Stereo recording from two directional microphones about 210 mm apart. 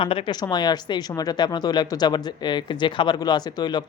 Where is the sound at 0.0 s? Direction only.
25° left (ahead or behind).